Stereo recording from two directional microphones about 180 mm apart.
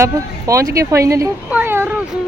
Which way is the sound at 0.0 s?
15° right (ahead or behind).